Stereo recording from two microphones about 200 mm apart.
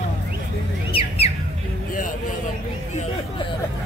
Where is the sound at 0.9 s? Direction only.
30° left (ahead or behind).